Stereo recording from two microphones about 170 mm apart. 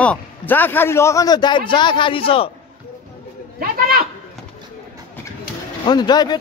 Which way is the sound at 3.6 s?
60° right (ahead or behind).